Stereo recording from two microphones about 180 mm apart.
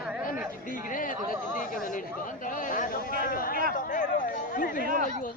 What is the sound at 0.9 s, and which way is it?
A man's voice, 50° left (ahead or behind).